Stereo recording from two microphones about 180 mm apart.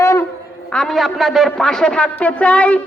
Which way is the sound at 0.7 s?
Centre (ahead or behind).